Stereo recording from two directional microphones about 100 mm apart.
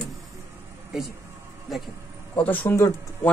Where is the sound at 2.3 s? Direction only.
15° left (ahead or behind).